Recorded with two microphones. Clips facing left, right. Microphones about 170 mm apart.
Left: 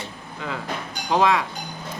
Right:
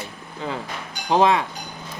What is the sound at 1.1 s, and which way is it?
Speech, 30° right (ahead or behind).